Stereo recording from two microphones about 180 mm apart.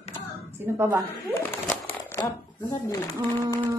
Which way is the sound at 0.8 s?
15° right (ahead or behind).